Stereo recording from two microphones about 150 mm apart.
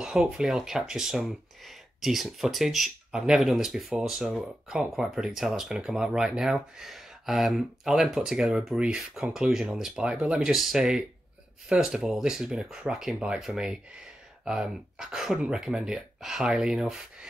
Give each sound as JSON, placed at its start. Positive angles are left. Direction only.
{"t": 0.0, "sound": "speech", "side_deg": -5}